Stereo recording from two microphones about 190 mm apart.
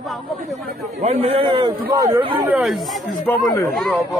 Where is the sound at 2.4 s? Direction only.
5° right (ahead or behind).